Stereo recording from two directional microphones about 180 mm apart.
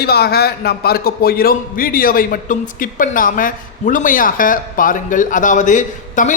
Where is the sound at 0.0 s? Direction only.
60° left (ahead or behind).